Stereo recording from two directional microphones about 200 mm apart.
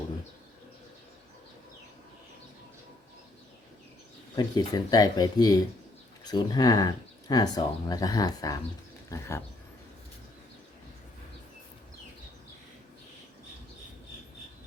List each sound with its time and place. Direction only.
4.4 s speech: 20° left (ahead or behind)